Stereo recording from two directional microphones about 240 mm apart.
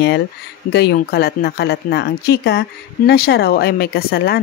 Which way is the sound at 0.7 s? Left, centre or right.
Left.